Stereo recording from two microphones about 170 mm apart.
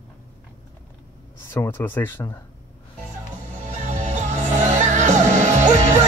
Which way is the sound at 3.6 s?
45° right (ahead or behind).